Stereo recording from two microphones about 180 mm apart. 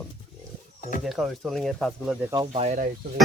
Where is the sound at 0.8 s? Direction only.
45° left (ahead or behind).